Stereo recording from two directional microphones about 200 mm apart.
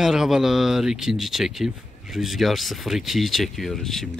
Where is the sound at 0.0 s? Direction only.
Centre (ahead or behind).